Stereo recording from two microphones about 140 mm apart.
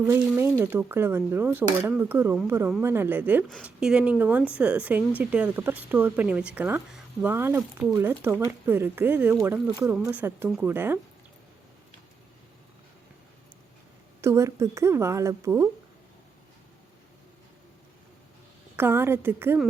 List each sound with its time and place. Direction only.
0.0 s speech: 15° right (ahead or behind)
14.2 s speech: 20° right (ahead or behind)
18.8 s speech: 15° right (ahead or behind)